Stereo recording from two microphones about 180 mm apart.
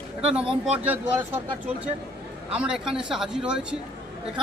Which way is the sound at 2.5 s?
5° right (ahead or behind).